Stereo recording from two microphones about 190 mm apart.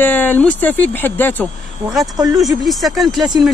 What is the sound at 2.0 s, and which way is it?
Speech, 20° right (ahead or behind).